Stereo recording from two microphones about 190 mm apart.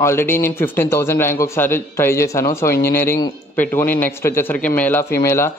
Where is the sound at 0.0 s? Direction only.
15° left (ahead or behind).